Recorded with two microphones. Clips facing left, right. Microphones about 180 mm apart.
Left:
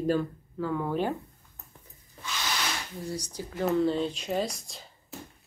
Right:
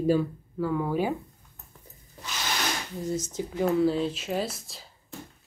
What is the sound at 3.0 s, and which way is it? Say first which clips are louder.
Speech: right 7 dB; 20° right (ahead or behind).